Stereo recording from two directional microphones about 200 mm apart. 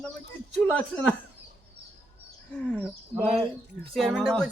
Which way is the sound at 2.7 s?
10° left (ahead or behind).